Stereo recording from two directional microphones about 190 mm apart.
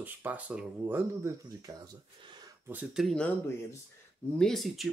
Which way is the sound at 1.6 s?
20° right (ahead or behind).